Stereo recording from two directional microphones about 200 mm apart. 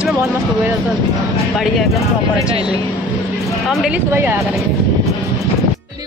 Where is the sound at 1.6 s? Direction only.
Centre (ahead or behind).